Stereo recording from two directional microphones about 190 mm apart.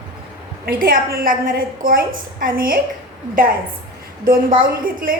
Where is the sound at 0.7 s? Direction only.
50° right (ahead or behind).